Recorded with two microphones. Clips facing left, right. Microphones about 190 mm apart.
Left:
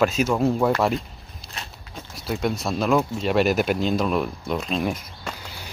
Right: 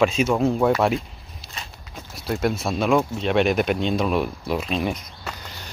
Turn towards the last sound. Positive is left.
turn(degrees=5)  # may be behind; listen again after turning